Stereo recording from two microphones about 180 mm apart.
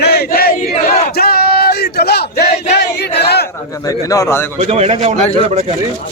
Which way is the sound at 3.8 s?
20° left (ahead or behind).